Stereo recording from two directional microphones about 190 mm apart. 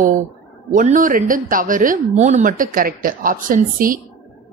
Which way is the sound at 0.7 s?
40° right (ahead or behind).